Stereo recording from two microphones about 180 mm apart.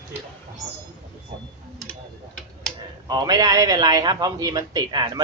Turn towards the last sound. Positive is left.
turn(degrees=-20)  # may be behind; listen again after turning